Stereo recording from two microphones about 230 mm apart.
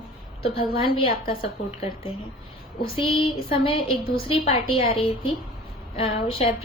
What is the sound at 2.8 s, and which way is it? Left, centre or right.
A woman's voice, left.